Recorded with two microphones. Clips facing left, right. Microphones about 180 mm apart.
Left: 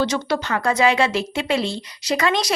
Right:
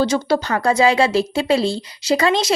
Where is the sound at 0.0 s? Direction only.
30° right (ahead or behind).